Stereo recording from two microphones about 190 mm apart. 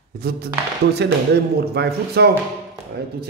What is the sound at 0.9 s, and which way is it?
A man's voice, 60° right (ahead or behind).